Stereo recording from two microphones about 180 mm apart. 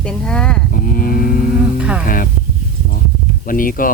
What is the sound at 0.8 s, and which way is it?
Speech, 50° left (ahead or behind).